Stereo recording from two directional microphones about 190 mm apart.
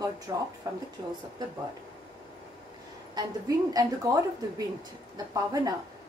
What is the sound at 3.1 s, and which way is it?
A woman's voice, 20° right (ahead or behind).